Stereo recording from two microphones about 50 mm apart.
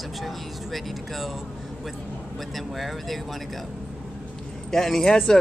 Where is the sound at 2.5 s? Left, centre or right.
Centre.